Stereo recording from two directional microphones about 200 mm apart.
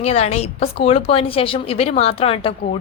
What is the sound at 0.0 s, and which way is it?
A woman's voice, 35° left (ahead or behind).